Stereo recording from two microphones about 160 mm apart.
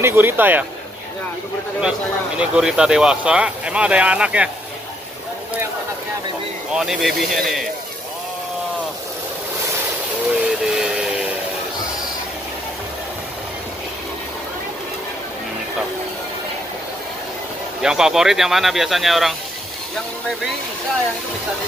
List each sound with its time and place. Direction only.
0.0 s speech: 15° right (ahead or behind)
1.8 s speech: 5° right (ahead or behind)
6.7 s speech: 5° right (ahead or behind)
10.6 s vacuum cleaner: 5° right (ahead or behind)
17.8 s speech: 5° right (ahead or behind)